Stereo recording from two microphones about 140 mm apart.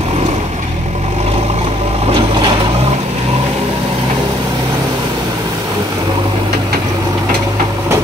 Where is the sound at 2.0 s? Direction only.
40° right (ahead or behind).